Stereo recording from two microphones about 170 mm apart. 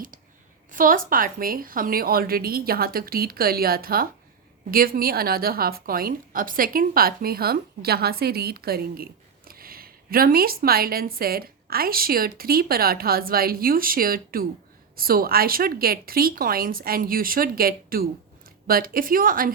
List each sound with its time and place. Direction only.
0.7 s a woman's voice: 55° right (ahead or behind)